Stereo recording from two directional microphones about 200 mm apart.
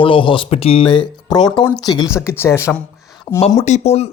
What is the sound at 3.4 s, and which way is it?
Speech, 30° left (ahead or behind).